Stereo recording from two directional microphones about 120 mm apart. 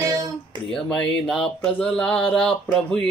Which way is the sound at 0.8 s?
5° left (ahead or behind).